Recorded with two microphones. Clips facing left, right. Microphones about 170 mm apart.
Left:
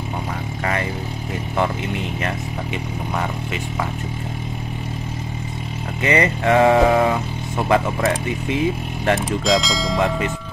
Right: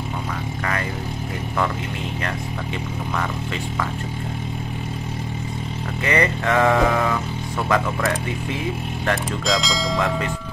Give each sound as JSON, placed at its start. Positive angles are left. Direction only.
{"t": 6.0, "sound": "speech", "side_deg": 20}
{"t": 9.5, "sound": "speech", "side_deg": 0}